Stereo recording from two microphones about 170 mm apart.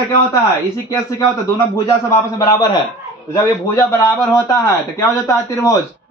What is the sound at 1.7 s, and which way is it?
A man's voice, 20° left (ahead or behind).